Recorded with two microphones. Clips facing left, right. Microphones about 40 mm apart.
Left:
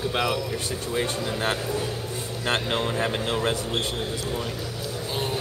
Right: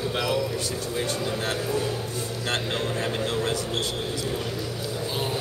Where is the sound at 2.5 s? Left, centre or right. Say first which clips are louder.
Left 3 dB; left.